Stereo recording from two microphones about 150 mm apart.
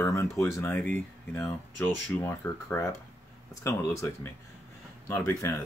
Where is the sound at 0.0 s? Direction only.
20° left (ahead or behind).